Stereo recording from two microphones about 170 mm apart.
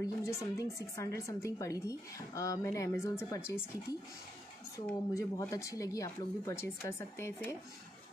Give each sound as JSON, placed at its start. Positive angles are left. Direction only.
{"t": 0.0, "sound": "speech", "side_deg": 15}
{"t": 5.1, "sound": "speech", "side_deg": 20}